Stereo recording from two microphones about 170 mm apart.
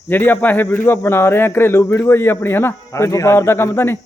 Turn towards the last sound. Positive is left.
turn(degrees=15)  # may be behind; listen again after turning